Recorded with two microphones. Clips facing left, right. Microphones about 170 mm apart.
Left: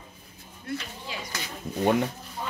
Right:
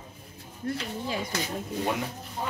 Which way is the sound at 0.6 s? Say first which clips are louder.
Right 2 dB; 40° right (ahead or behind).